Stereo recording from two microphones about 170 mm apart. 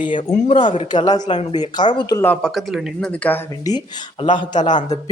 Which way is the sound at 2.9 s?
10° left (ahead or behind).